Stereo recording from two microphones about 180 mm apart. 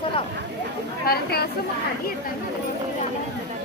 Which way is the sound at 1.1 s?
60° left (ahead or behind).